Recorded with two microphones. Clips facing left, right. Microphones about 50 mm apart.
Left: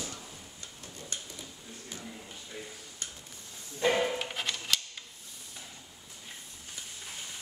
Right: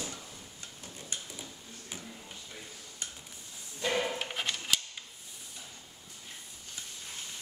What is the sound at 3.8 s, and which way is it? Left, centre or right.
Music, centre.